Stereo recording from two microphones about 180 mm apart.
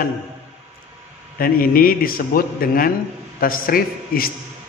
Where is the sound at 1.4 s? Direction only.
55° left (ahead or behind).